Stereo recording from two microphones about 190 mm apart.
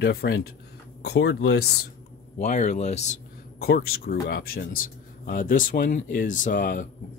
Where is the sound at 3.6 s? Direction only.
55° left (ahead or behind).